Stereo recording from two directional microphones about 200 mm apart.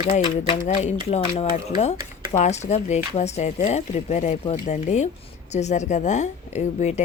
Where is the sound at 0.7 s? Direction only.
35° left (ahead or behind).